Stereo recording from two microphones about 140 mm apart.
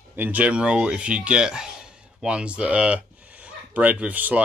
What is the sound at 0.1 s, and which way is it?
Speech, 10° right (ahead or behind).